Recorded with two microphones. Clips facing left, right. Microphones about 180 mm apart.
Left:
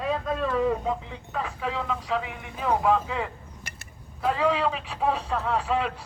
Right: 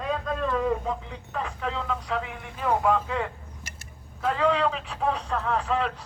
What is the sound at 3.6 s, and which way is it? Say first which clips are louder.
Vehicle: left 1 dB; 60° left (ahead or behind).